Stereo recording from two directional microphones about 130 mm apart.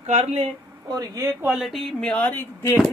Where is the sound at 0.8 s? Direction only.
30° right (ahead or behind).